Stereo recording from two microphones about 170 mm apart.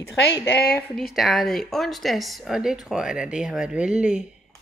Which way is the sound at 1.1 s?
Centre (ahead or behind).